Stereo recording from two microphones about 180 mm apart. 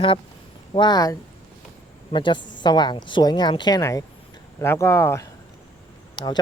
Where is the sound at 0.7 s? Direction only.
25° left (ahead or behind).